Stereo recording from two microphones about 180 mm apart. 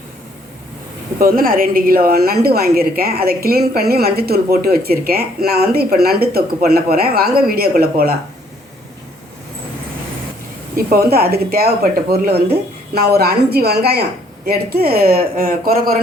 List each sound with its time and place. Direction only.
1.2 s speech: 55° right (ahead or behind)
10.8 s speech: 55° right (ahead or behind)